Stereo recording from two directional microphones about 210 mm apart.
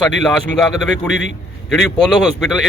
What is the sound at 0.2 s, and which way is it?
A man's voice, 5° left (ahead or behind).